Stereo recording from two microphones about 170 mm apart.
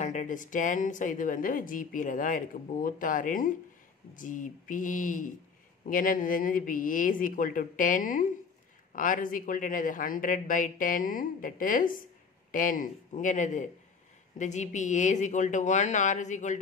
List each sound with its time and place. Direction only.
0.0 s a woman's voice: 45° left (ahead or behind)